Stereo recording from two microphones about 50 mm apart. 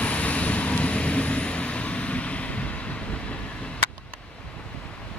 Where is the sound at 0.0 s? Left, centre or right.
Left.